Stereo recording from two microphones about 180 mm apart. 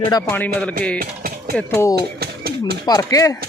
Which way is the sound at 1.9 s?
60° right (ahead or behind).